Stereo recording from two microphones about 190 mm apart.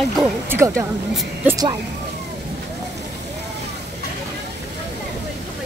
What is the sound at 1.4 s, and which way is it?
Speech, 20° right (ahead or behind).